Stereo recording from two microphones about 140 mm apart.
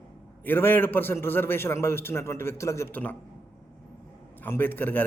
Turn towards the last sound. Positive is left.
turn(degrees=15)  # may be behind; listen again after turning